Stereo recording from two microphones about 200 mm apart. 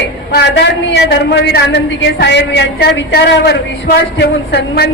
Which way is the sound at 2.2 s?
60° left (ahead or behind).